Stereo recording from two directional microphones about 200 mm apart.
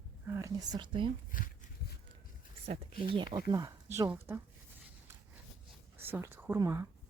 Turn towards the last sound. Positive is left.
turn(degrees=-15)  # may be behind; listen again after turning